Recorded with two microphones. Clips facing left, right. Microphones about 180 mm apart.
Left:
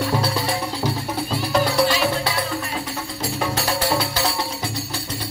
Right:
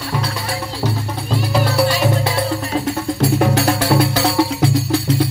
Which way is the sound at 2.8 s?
60° right (ahead or behind).